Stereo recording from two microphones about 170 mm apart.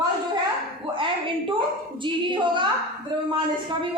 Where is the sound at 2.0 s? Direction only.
30° right (ahead or behind).